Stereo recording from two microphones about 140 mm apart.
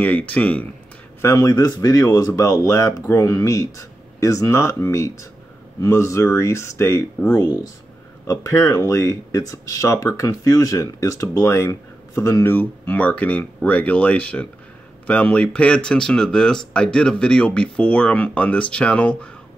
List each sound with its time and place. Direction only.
0.0 s speech: 10° left (ahead or behind)
1.2 s speech: 25° left (ahead or behind)